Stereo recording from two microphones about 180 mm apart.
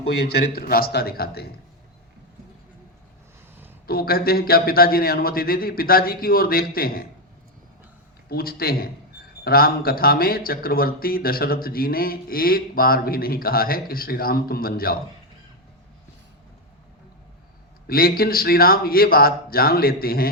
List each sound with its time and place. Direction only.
0.5 s speech: 55° left (ahead or behind)
3.8 s speech: 55° left (ahead or behind)
8.3 s speech: 55° left (ahead or behind)
17.8 s speech: 55° left (ahead or behind)